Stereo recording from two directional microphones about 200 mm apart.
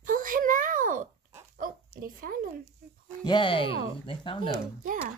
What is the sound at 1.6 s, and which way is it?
Bow-wow, 45° right (ahead or behind).